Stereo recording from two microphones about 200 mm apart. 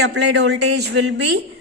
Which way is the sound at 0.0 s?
60° right (ahead or behind).